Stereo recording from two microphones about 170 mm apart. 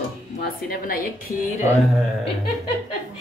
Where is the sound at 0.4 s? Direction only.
60° left (ahead or behind).